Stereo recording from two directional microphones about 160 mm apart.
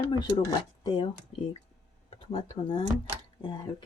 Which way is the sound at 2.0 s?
40° left (ahead or behind).